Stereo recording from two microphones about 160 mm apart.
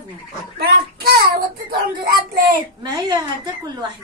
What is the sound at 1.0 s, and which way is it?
Child singing, 70° right (ahead or behind).